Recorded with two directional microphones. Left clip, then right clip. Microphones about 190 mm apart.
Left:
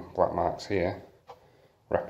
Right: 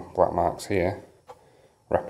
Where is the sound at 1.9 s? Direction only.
30° right (ahead or behind).